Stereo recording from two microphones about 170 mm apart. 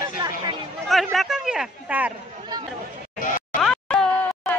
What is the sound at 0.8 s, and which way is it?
Chatter, centre (ahead or behind).